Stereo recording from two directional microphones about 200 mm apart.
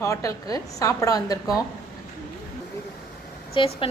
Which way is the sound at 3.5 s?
25° left (ahead or behind).